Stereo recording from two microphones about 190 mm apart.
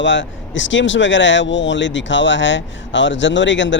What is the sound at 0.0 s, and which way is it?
Speech, 70° left (ahead or behind).